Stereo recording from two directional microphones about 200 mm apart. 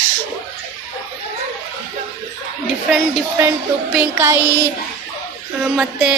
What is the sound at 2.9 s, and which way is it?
Speech, 10° right (ahead or behind).